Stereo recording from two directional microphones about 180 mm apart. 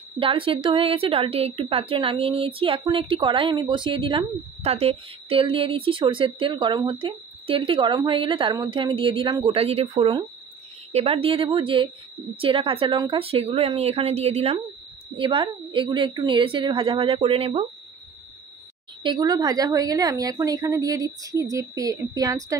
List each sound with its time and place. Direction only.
0.2 s a woman's voice: 30° right (ahead or behind)
19.0 s a woman's voice: 20° right (ahead or behind)